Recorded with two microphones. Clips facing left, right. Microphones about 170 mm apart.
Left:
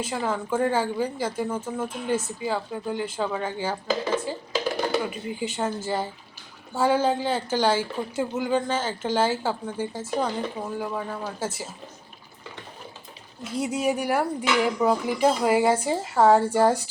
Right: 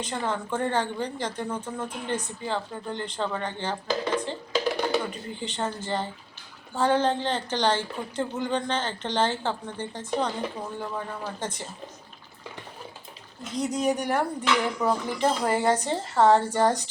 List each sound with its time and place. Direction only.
0.0 s speech: 5° left (ahead or behind)
13.4 s speech: 5° left (ahead or behind)